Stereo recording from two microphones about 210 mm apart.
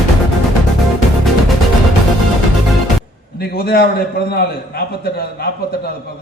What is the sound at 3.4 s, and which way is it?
A man's voice, 45° left (ahead or behind).